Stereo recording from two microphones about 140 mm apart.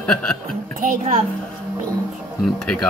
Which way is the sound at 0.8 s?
80° right.